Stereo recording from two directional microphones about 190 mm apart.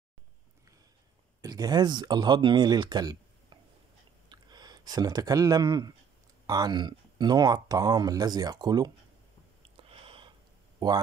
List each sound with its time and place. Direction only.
1.4 s speech: 20° right (ahead or behind)
9.8 s a sound: 30° right (ahead or behind)
10.8 s speech: 20° right (ahead or behind)